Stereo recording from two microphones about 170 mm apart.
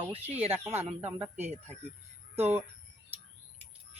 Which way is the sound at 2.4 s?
15° right (ahead or behind).